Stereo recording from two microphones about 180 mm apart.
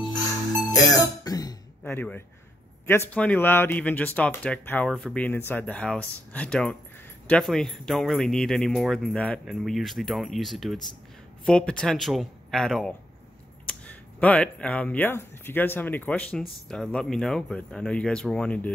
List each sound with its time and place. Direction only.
0.7 s music: 20° left (ahead or behind)
1.9 s speech: 10° left (ahead or behind)